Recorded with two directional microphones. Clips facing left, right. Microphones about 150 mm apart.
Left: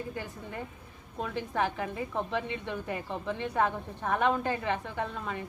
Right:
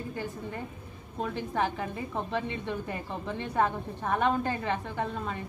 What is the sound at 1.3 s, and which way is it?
A woman's voice, 35° right (ahead or behind).